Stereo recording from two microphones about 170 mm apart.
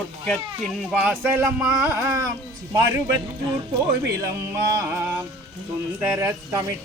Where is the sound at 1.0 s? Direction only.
10° right (ahead or behind).